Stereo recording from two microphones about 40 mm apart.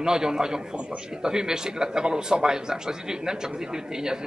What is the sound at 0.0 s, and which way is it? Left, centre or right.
A man's voice, centre.